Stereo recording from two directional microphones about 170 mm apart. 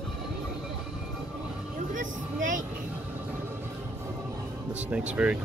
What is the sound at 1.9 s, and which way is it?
Speech, 50° right (ahead or behind).